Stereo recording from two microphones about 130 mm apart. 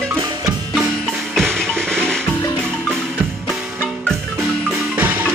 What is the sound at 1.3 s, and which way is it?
Music, centre (ahead or behind).